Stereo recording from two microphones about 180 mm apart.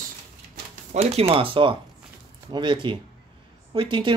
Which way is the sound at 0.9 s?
35° right (ahead or behind).